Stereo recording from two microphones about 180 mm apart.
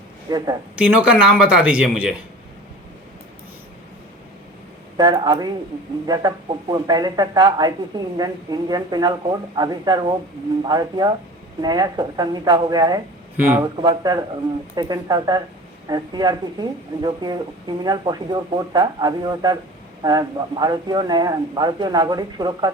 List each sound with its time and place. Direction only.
0.3 s speech: 20° right (ahead or behind)
0.8 s speech: 5° right (ahead or behind)
4.9 s speech: 20° right (ahead or behind)
13.3 s speech: 10° right (ahead or behind)
13.8 s speech: 25° right (ahead or behind)